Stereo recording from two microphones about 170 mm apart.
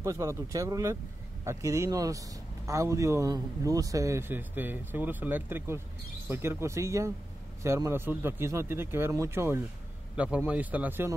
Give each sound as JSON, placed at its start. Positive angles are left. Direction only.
{"t": 0.0, "sound": "a man's voice", "side_deg": -15}